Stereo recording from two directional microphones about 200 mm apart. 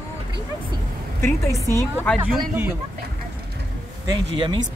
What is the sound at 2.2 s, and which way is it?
Speech, 10° right (ahead or behind).